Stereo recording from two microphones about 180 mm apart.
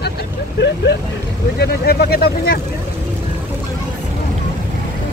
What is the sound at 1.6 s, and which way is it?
Vehicle, 60° left (ahead or behind).